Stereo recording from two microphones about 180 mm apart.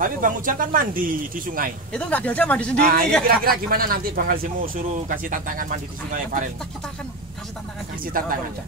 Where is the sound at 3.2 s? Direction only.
55° right (ahead or behind).